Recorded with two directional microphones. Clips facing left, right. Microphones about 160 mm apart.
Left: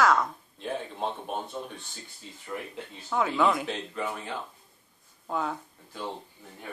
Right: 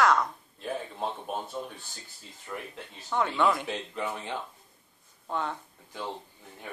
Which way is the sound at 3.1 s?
5° left (ahead or behind).